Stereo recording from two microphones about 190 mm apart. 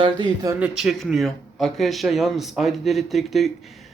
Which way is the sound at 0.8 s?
Centre (ahead or behind).